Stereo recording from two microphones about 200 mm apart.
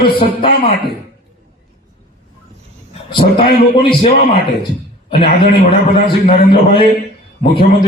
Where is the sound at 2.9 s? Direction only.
25° left (ahead or behind).